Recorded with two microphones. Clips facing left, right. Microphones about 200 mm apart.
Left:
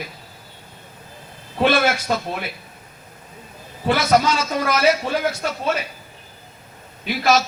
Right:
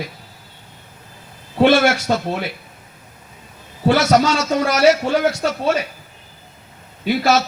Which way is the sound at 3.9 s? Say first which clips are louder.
Right 3 dB; 75° right (ahead or behind).